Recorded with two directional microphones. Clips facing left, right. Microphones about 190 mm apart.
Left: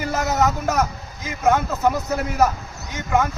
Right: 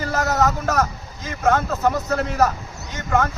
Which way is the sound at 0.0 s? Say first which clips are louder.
Even; 15° left (ahead or behind).